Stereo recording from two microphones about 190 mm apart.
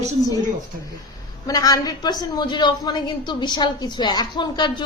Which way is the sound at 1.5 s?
20° left (ahead or behind).